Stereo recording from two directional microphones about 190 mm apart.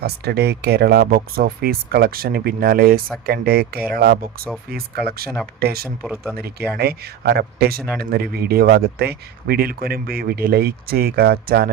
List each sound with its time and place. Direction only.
0.0 s speech: 60° right (ahead or behind)